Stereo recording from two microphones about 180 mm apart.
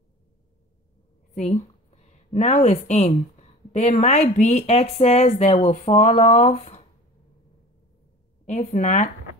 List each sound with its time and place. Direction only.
1.3 s a woman's voice: 40° left (ahead or behind)
8.5 s speech: 45° left (ahead or behind)